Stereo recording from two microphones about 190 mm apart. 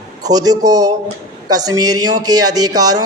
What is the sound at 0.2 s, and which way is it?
A man's voice, 20° right (ahead or behind).